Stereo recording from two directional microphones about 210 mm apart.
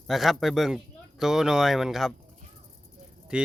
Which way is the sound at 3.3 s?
5° right (ahead or behind).